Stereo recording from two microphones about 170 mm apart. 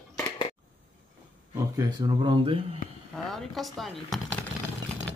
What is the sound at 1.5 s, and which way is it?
Speech, 20° right (ahead or behind).